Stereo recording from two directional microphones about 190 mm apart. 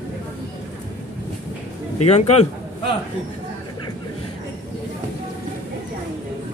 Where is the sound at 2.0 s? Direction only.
35° left (ahead or behind).